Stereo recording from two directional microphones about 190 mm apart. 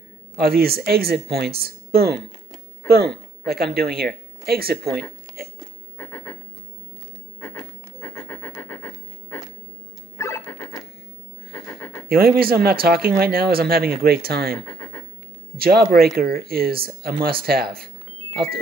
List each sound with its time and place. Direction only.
0.4 s speech: 55° right (ahead or behind)
5.9 s a sound: 10° left (ahead or behind)
8.0 s pant: 10° left (ahead or behind)
10.1 s a sound: 10° left (ahead or behind)
11.5 s pant: 10° left (ahead or behind)
12.1 s speech: 50° right (ahead or behind)
18.3 s music: 55° right (ahead or behind)